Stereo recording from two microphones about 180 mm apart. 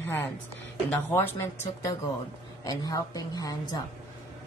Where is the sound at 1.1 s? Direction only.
10° left (ahead or behind).